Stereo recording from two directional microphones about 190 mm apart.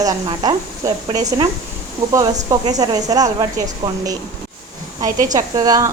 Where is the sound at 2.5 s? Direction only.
20° right (ahead or behind).